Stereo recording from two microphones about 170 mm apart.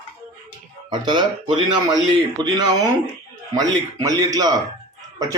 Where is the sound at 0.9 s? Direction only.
30° right (ahead or behind).